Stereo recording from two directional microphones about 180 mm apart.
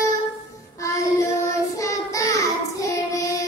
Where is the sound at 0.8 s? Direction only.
15° left (ahead or behind).